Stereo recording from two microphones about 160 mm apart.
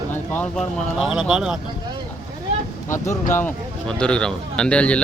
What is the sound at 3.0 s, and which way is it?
Speech, 50° left (ahead or behind).